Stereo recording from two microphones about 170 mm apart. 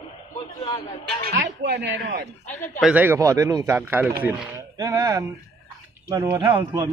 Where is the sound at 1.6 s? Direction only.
90° right; by 2.3 s 75° right (ahead or behind).